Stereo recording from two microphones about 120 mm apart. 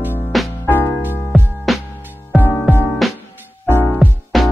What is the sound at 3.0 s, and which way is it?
Music, centre (ahead or behind).